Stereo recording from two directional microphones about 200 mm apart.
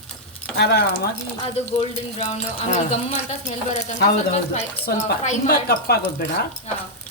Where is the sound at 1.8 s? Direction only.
30° left (ahead or behind).